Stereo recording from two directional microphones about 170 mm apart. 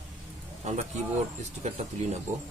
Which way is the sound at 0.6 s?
45° right (ahead or behind).